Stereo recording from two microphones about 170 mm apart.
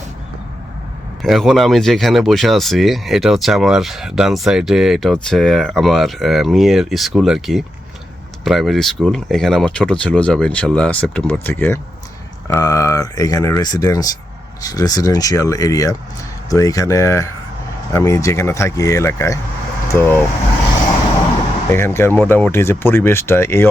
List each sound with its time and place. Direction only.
1.2 s speech: centre (ahead or behind)
21.7 s speech: 15° left (ahead or behind)